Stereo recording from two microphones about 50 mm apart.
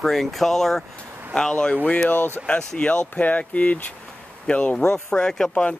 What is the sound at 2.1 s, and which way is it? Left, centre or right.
Speech, left.